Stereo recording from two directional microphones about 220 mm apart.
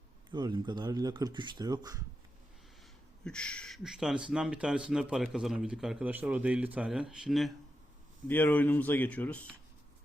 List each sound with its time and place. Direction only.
0.3 s speech: 20° right (ahead or behind)
3.2 s speech: 5° left (ahead or behind)